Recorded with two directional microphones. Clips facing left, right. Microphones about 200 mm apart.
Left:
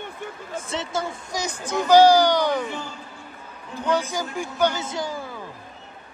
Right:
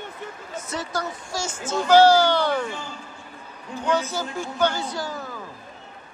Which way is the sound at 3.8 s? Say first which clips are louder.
Even; 15° left (ahead or behind).